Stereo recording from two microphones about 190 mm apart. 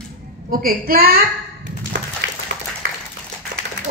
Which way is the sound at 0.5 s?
50° right (ahead or behind).